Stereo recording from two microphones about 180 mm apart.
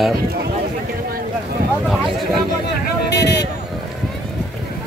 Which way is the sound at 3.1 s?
70° left (ahead or behind).